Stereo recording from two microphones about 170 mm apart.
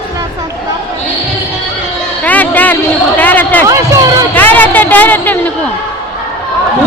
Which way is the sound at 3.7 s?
20° right (ahead or behind).